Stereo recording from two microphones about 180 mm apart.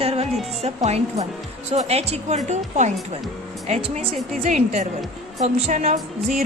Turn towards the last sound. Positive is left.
turn(degrees=-45)  # may be behind; listen again after turning